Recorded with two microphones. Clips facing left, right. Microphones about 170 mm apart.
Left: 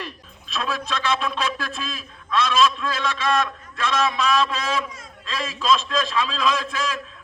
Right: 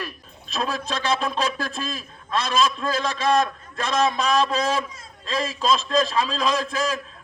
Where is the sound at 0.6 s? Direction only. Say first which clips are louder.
Even; 40° right (ahead or behind).